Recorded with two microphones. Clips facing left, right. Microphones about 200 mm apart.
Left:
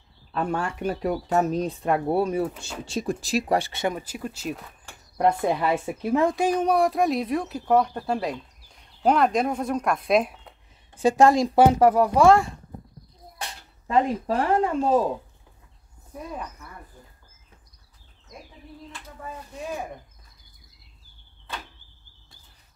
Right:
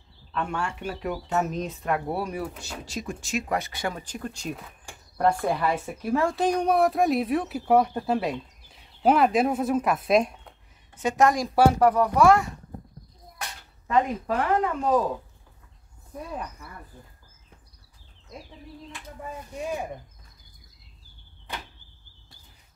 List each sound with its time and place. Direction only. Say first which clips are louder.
0.3 s speech: left 3 dB; 35° left (ahead or behind)
4.0 s speech: left 2 dB; 5° left (ahead or behind)
5.4 s speech: left 2 dB; 20° left (ahead or behind); by 10.5 s centre (ahead or behind)
11.0 s speech: left 4 dB; 30° left (ahead or behind)
21.5 s a sound: even; 15° right (ahead or behind)